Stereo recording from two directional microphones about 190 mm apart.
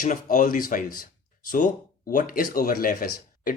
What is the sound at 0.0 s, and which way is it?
Speech, 45° left (ahead or behind).